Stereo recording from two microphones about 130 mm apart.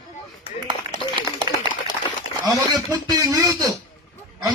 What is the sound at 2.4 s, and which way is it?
Speech, 30° right (ahead or behind).